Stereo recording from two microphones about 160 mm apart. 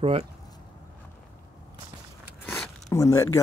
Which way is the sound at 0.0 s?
40° right (ahead or behind).